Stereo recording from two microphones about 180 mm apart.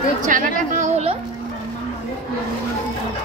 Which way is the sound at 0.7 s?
40° right (ahead or behind).